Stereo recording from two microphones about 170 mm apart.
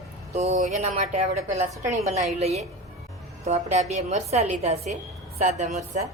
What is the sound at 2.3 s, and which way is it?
A woman's voice, 40° right (ahead or behind).